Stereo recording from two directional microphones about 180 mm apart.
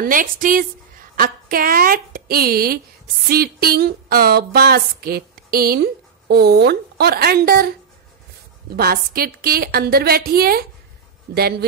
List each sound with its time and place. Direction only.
0.0 s a woman's voice: 50° right (ahead or behind)
8.7 s speech: 60° right (ahead or behind)